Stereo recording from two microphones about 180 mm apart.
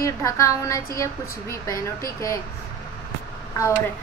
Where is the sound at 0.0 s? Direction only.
15° left (ahead or behind).